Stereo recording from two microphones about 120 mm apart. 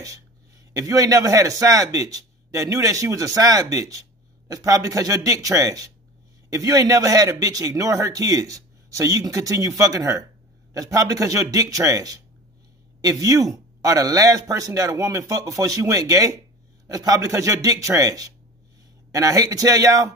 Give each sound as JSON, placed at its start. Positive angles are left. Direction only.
{"t": 0.7, "sound": "a man's voice", "side_deg": -30}